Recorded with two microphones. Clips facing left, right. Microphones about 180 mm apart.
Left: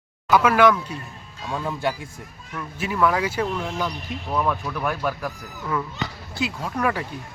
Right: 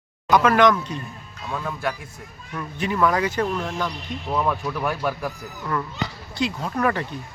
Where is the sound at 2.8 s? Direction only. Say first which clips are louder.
Right 1 dB; 5° left (ahead or behind).